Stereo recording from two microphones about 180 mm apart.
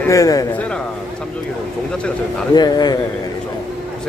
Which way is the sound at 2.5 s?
25° left (ahead or behind).